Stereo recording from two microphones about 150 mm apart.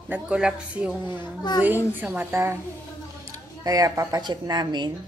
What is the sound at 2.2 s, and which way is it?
Speech, 20° right (ahead or behind).